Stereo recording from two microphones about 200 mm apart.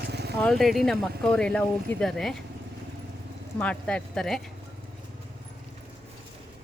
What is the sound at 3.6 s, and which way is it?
Speech, 5° left (ahead or behind).